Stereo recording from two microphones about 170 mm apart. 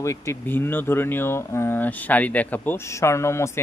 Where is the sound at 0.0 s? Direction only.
15° left (ahead or behind).